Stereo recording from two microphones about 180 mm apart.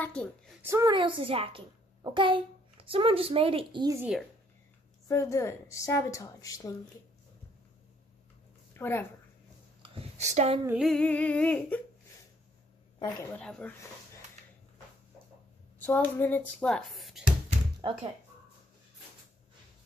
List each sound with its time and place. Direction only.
0.0 s a woman's voice: 10° left (ahead or behind)
0.7 s a child's voice: 15° right (ahead or behind)
0.9 s a woman's voice: 30° right (ahead or behind)
5.0 s a woman's voice: 15° left (ahead or behind)
8.7 s speech: 10° left (ahead or behind)
9.8 s a sound: 30° right (ahead or behind)
10.8 s a woman's voice: 5° left (ahead or behind)
13.0 s a woman's voice: 15° left (ahead or behind)
15.8 s a woman's voice: 10° left (ahead or behind)